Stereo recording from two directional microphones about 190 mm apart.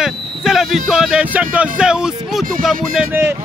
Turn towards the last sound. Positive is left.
turn(degrees=-10)  # may be behind; listen again after turning